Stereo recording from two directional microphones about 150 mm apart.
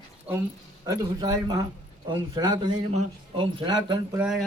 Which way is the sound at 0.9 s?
25° right (ahead or behind).